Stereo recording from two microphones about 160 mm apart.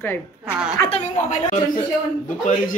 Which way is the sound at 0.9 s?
45° left (ahead or behind).